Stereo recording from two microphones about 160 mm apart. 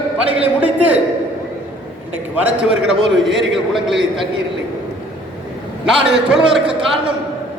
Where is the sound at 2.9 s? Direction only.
5° right (ahead or behind).